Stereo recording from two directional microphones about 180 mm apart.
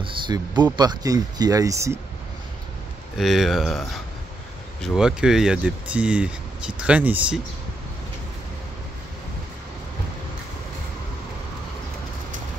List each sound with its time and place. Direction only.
0.0 s a sound: 25° right (ahead or behind)
0.7 s speech: 20° right (ahead or behind)
3.2 s speech: centre (ahead or behind)